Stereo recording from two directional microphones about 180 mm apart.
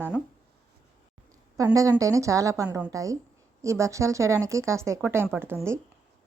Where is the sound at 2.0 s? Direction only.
15° right (ahead or behind).